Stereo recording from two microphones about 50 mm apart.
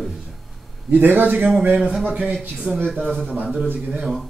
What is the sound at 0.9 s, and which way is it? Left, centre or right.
Speech, right.